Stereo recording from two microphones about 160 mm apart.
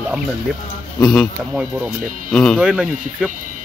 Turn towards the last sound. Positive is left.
turn(degrees=-5)  # may be behind; listen again after turning